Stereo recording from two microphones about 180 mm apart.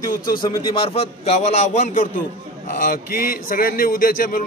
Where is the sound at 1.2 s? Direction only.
40° left (ahead or behind).